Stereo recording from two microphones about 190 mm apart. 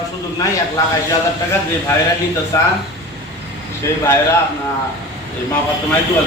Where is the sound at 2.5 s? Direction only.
15° left (ahead or behind).